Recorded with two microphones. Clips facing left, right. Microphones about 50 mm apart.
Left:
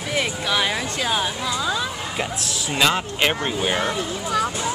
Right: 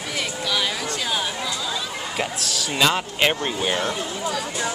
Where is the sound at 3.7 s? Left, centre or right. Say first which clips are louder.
Left 2 dB; centre.